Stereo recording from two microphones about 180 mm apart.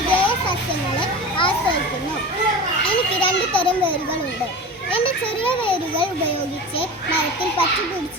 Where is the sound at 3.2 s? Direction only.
30° left (ahead or behind).